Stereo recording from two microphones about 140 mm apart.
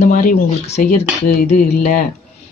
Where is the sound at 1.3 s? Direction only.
90° left.